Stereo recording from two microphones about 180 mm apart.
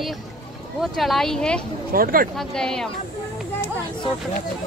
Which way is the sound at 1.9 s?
55° right (ahead or behind).